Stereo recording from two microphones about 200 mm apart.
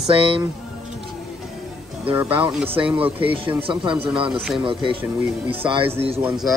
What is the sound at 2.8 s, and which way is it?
Speech, 10° right (ahead or behind).